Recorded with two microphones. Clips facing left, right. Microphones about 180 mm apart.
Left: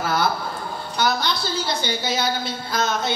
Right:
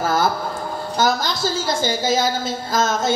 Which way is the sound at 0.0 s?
45° right (ahead or behind).